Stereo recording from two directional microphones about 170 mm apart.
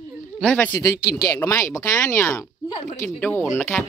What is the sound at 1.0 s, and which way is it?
Speech, 60° left (ahead or behind).